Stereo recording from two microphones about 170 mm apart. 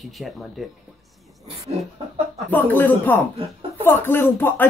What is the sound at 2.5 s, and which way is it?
Speech, 10° left (ahead or behind).